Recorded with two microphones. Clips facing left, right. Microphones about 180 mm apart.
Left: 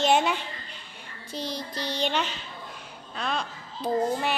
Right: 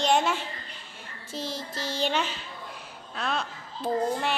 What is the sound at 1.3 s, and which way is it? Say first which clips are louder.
Child singing: left 1 dB; 5° right (ahead or behind).